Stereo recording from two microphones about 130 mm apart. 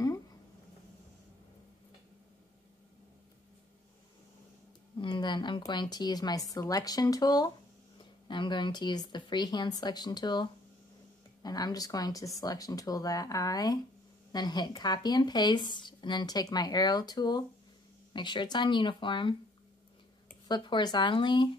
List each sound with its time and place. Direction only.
4.9 s a sound: 35° left (ahead or behind)
5.7 s speech: 35° left (ahead or behind)
20.4 s speech: 35° left (ahead or behind)